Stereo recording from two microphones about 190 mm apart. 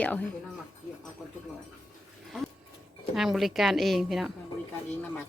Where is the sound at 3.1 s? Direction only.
Centre (ahead or behind).